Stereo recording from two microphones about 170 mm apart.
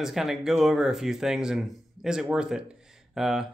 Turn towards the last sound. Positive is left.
turn(degrees=-5)  # may be behind; listen again after turning